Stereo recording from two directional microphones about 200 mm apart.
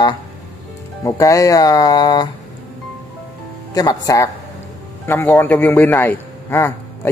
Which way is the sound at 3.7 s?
20° left (ahead or behind).